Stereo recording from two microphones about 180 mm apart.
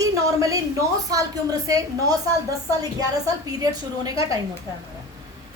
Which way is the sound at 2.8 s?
20° right (ahead or behind).